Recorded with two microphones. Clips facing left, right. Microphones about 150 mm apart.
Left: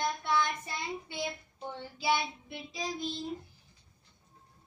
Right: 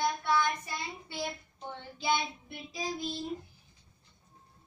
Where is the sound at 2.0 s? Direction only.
5° left (ahead or behind).